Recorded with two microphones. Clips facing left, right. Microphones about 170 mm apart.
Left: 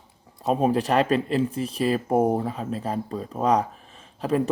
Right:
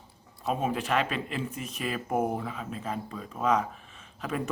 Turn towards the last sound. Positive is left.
turn(degrees=35)  # may be behind; listen again after turning